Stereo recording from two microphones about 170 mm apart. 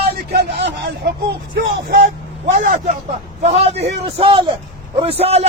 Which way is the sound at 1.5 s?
80° right.